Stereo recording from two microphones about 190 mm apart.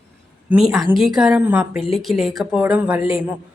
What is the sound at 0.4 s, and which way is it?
A woman's voice, 5° right (ahead or behind).